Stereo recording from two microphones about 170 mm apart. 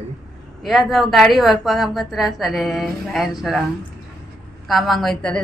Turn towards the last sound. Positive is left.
turn(degrees=5)  # may be behind; listen again after turning